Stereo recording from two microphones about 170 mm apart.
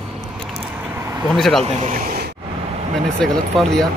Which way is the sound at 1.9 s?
60° right (ahead or behind).